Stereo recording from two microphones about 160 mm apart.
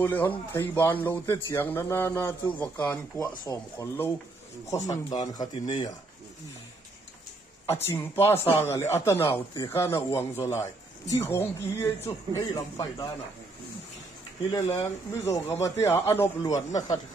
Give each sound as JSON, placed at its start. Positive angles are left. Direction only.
{"t": 0.0, "sound": "a man's voice", "side_deg": 10}
{"t": 7.7, "sound": "a man's voice", "side_deg": 15}
{"t": 14.5, "sound": "speech", "side_deg": 20}